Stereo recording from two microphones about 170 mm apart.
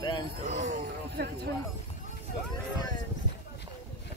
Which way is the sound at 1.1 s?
70° right (ahead or behind).